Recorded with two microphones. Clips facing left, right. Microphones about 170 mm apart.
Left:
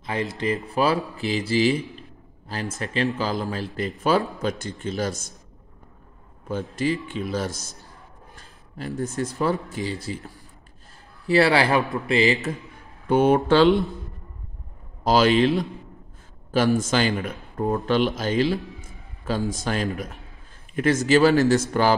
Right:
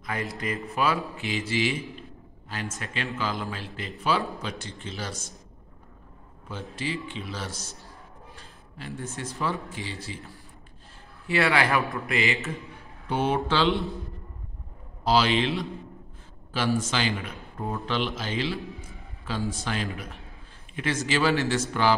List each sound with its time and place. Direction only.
0.0 s speech: 25° left (ahead or behind); by 5.1 s 45° left (ahead or behind)
6.7 s speech: 45° left (ahead or behind)
13.1 s speech: 50° left (ahead or behind)
15.0 s a man's voice: 45° left (ahead or behind)